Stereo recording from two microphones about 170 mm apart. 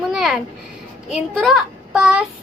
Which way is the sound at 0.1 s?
Centre (ahead or behind).